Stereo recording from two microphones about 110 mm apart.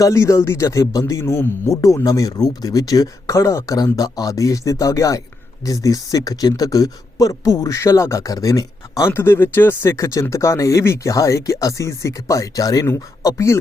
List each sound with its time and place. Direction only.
0.0 s speech: 25° left (ahead or behind)